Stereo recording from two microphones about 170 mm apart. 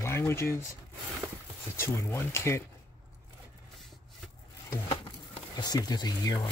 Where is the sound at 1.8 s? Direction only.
15° left (ahead or behind).